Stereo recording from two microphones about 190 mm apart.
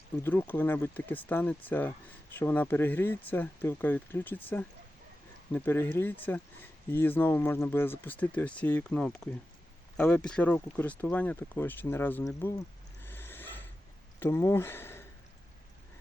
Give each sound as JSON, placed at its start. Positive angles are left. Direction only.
{"t": 0.2, "sound": "speech", "side_deg": 10}
{"t": 13.0, "sound": "a sound", "side_deg": 10}
{"t": 14.2, "sound": "speech", "side_deg": 15}